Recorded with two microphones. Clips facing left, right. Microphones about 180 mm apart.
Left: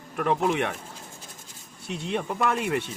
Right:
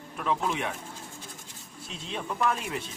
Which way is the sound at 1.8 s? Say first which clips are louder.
Left 7 dB; 65° left (ahead or behind).